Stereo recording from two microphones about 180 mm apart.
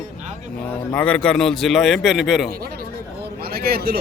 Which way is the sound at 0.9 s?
5° left (ahead or behind).